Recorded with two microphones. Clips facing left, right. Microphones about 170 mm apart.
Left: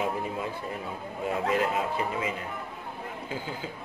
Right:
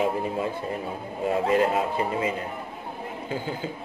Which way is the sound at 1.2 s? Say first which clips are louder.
Right 5 dB; 30° right (ahead or behind).